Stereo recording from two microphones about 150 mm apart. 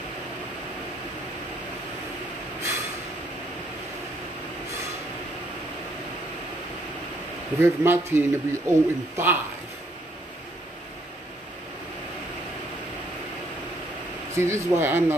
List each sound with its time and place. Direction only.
7.5 s a man's voice: 15° right (ahead or behind)
14.3 s a man's voice: 20° right (ahead or behind)